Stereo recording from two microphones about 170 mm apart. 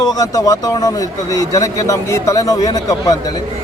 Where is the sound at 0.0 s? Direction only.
20° left (ahead or behind).